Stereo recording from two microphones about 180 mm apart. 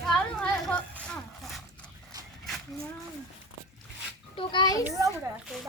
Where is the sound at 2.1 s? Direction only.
20° right (ahead or behind).